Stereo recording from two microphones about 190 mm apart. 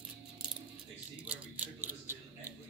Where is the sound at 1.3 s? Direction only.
10° right (ahead or behind).